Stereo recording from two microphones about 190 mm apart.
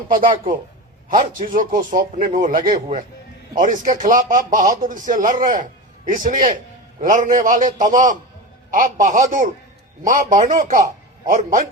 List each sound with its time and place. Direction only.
0.1 s a man's voice: 45° right (ahead or behind)